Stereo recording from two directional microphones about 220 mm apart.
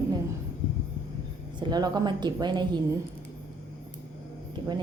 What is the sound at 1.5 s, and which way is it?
Speech, 20° right (ahead or behind).